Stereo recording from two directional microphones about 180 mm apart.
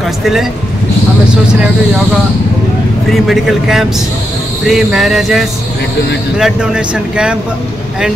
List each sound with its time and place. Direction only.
0.2 s speech: centre (ahead or behind)
3.1 s speech: centre (ahead or behind)